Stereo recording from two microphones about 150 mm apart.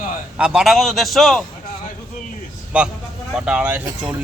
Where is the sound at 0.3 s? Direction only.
5° right (ahead or behind).